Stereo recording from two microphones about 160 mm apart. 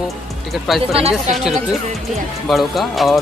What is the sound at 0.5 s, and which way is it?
Speech, centre (ahead or behind).